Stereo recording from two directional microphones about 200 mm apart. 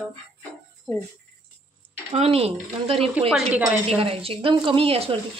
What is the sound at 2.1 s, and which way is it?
Speech, 30° right (ahead or behind).